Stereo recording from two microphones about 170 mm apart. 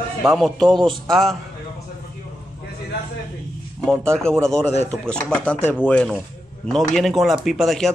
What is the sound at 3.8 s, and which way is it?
Speech, 5° left (ahead or behind).